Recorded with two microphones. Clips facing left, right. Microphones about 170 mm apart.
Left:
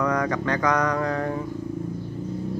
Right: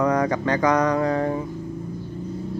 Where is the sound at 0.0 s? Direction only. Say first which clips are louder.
Right 3 dB; 30° right (ahead or behind).